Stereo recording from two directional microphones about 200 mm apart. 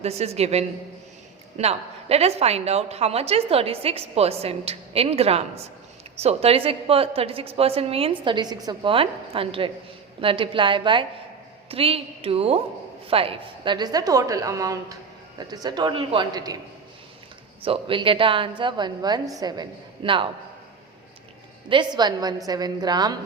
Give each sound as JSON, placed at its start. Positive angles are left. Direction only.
{"t": 0.0, "sound": "a woman's voice", "side_deg": -30}
{"t": 17.7, "sound": "a woman's voice", "side_deg": -25}
{"t": 21.7, "sound": "a woman's voice", "side_deg": -20}